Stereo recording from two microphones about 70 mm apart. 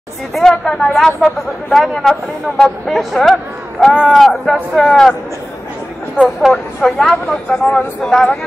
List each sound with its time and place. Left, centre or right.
0.3 s speech: centre
6.2 s speech: left
6.8 s speech: centre